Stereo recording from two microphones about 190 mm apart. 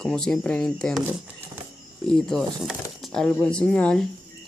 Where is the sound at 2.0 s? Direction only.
Centre (ahead or behind).